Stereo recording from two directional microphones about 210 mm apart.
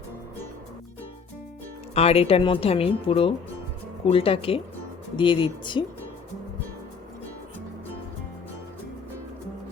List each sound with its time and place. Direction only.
2.0 s speech: 30° left (ahead or behind)